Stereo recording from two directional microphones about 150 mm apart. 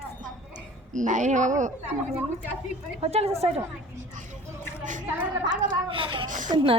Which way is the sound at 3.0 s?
45° right (ahead or behind).